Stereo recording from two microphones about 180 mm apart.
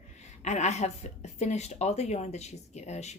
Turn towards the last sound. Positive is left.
turn(degrees=40)  # may be behind; listen again after turning